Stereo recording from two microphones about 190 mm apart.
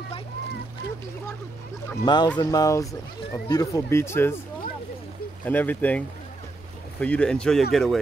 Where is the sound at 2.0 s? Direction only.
20° left (ahead or behind).